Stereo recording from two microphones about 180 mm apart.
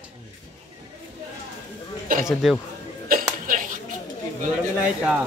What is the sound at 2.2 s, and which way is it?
Speech, centre (ahead or behind).